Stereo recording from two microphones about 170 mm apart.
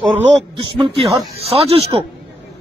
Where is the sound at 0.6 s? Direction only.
30° right (ahead or behind).